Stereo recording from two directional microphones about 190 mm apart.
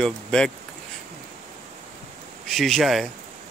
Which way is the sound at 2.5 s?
Centre (ahead or behind).